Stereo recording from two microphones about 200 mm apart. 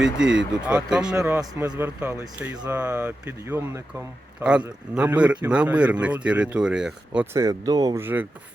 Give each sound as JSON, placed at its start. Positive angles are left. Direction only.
{"t": 0.0, "sound": "speech", "side_deg": -5}
{"t": 1.4, "sound": "speech", "side_deg": -20}
{"t": 7.3, "sound": "speech", "side_deg": -20}